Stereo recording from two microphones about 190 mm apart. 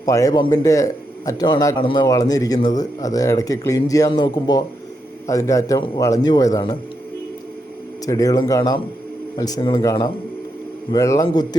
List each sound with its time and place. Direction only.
0.0 s a man's voice: 15° left (ahead or behind)
8.0 s a man's voice: 20° left (ahead or behind)